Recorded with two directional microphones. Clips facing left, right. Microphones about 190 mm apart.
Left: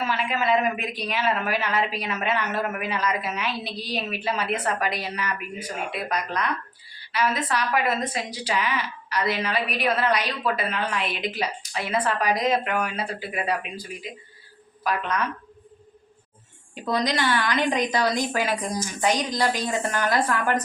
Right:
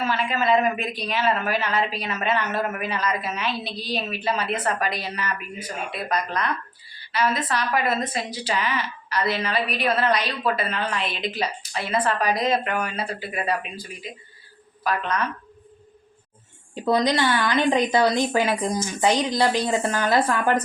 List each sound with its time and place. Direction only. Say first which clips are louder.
0.0 s speech: right 2 dB; 10° left (ahead or behind)
14.8 s speech: right 1 dB; 10° left (ahead or behind)
16.8 s a woman's voice: right 4 dB; 25° right (ahead or behind)